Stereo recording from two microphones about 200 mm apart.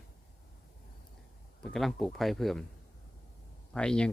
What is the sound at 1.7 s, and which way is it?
Speech, centre (ahead or behind).